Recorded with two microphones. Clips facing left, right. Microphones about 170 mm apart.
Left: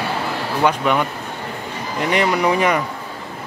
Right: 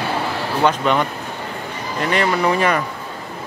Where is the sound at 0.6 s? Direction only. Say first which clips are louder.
Even; 10° left (ahead or behind).